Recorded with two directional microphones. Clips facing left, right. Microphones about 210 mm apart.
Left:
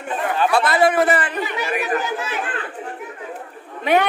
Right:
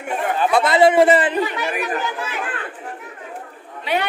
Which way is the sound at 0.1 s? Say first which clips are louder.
Right 1 dB; 20° right (ahead or behind).